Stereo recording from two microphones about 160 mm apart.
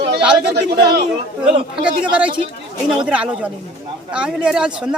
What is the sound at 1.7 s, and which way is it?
A woman's voice, 5° right (ahead or behind).